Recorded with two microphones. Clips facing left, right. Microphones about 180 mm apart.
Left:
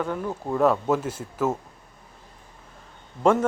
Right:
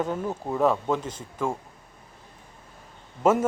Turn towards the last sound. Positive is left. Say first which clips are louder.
# left 1 dB
turn(degrees=-5)  # may be behind; listen again after turning